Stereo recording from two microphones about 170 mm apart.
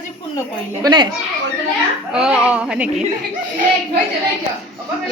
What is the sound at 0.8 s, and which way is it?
Speech, 25° right (ahead or behind).